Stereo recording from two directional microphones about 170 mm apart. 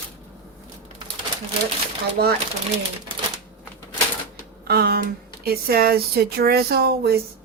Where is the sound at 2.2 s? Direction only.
65° right (ahead or behind).